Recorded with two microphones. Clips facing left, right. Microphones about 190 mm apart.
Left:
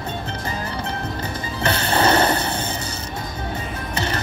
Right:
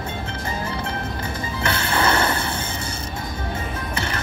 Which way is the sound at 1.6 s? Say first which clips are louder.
Left 3 dB; 35° left (ahead or behind).